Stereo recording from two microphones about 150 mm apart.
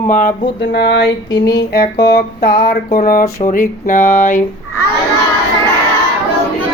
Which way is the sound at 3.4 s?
65° left (ahead or behind).